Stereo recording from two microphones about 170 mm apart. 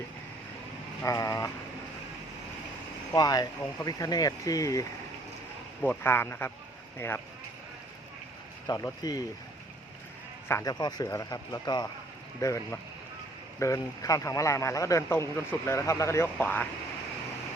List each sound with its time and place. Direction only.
1.0 s speech: 20° left (ahead or behind)
3.1 s a man's voice: 20° left (ahead or behind)
8.6 s speech: 20° left (ahead or behind)
10.5 s a man's voice: 20° left (ahead or behind)